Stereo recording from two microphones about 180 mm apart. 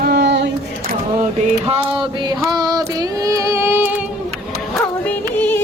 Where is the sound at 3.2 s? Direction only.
15° right (ahead or behind).